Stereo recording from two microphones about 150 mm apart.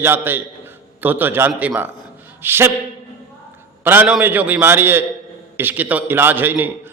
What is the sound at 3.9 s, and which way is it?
A man's voice, 10° right (ahead or behind).